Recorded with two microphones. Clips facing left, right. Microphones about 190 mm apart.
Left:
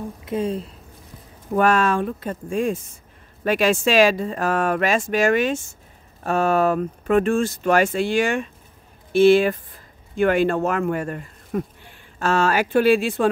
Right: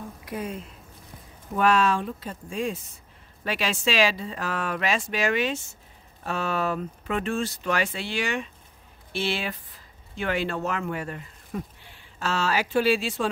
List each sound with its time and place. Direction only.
0.2 s speech: 25° left (ahead or behind)
1.5 s speech: 50° left (ahead or behind)